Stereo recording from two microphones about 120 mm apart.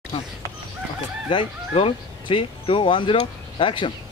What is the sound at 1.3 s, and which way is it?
Speech, 45° left (ahead or behind).